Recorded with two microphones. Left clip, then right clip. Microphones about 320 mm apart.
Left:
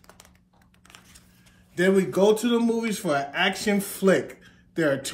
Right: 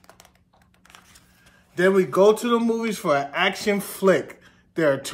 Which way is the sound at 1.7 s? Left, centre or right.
Centre.